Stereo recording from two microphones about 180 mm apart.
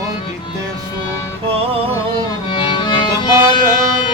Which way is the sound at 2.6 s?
25° left (ahead or behind).